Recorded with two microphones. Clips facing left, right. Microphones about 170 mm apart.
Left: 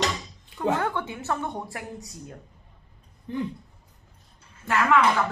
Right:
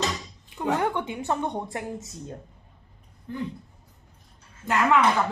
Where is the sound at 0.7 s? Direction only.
15° right (ahead or behind).